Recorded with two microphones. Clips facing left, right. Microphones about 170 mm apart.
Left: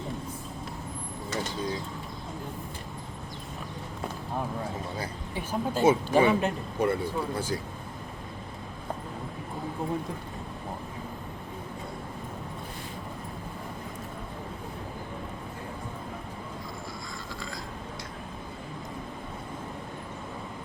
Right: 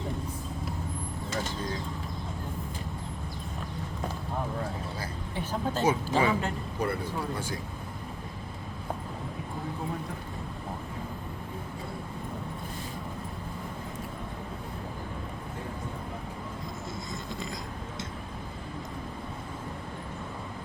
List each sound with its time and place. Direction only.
4.9 s speech: 10° left (ahead or behind)
5.8 s speech: 25° left (ahead or behind)